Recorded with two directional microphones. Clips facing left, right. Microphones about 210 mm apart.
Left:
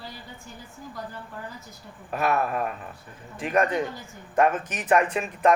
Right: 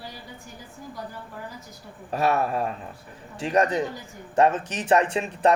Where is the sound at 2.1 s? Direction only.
30° right (ahead or behind).